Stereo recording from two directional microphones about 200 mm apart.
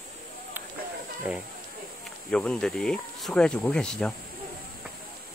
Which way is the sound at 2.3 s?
5° left (ahead or behind).